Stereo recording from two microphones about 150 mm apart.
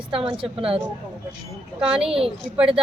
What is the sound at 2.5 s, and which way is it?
Speech, 5° right (ahead or behind).